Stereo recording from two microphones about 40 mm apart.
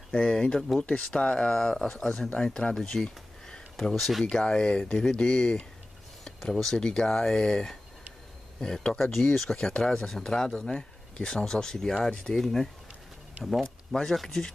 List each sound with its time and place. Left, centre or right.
0.1 s speech: left
1.5 s speech: centre
2.7 s a sound: centre
3.9 s speech: centre
4.3 s speech: centre
8.9 s speech: centre
9.6 s speech: left
9.8 s speech: centre
12.4 s speech: centre